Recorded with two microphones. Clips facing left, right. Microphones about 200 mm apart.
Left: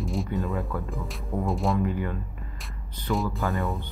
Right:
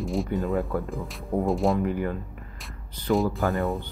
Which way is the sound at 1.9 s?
45° right (ahead or behind).